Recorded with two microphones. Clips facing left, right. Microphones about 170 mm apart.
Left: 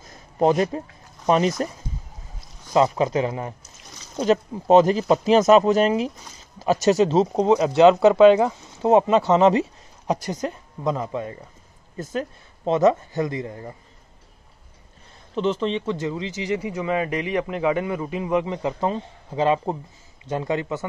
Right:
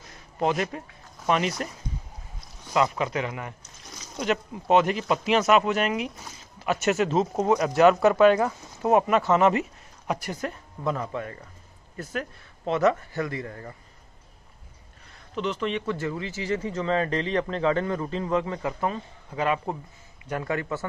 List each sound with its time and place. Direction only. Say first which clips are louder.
0.4 s speech: left 7 dB; 40° left (ahead or behind)
2.7 s speech: left 5 dB; 30° left (ahead or behind)
7.3 s speech: left 4 dB; 20° left (ahead or behind)
15.3 s a man's voice: left 5 dB; 30° left (ahead or behind)